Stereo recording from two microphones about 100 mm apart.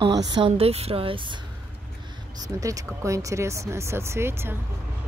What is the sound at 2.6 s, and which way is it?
Speech, 35° right (ahead or behind).